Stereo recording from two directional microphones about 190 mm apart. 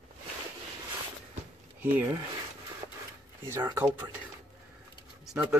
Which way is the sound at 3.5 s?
15° right (ahead or behind).